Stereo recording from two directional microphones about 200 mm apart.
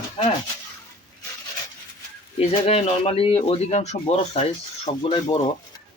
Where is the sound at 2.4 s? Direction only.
30° left (ahead or behind).